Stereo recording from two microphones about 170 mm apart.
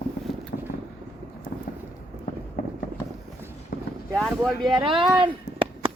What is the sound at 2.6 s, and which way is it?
Fireworks, 60° left (ahead or behind).